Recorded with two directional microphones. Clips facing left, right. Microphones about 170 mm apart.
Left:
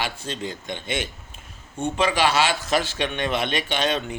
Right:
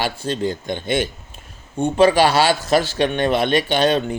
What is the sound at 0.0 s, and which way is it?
A man's voice, 35° right (ahead or behind).